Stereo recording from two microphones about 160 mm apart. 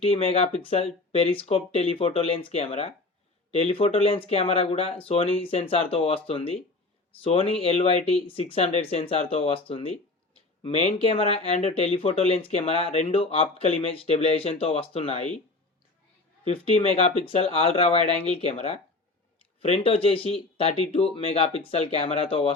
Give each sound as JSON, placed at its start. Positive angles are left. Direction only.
{"t": 0.0, "sound": "speech", "side_deg": 40}
{"t": 16.4, "sound": "speech", "side_deg": 35}